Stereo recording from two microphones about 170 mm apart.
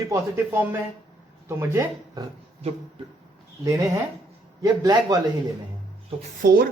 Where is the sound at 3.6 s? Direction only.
20° right (ahead or behind).